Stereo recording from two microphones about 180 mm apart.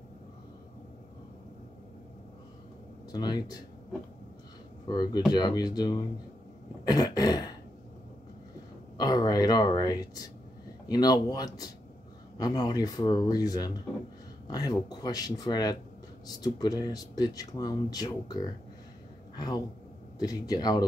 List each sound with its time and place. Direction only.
3.1 s speech: 20° left (ahead or behind)
4.8 s speech: 25° left (ahead or behind)
8.9 s a sound: 20° left (ahead or behind)
10.9 s speech: 20° left (ahead or behind)